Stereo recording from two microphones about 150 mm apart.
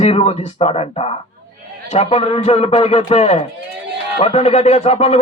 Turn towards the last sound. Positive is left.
turn(degrees=40)  # may be behind; listen again after turning